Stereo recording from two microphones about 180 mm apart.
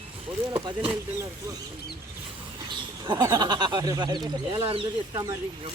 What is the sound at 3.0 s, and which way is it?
Speech, 25° right (ahead or behind).